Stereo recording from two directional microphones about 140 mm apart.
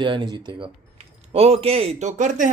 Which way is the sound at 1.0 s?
50° right (ahead or behind).